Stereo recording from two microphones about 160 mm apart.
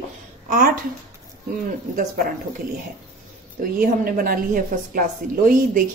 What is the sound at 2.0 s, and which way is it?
Speech, 60° right (ahead or behind).